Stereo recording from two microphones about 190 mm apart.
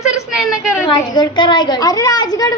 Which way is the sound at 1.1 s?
25° left (ahead or behind).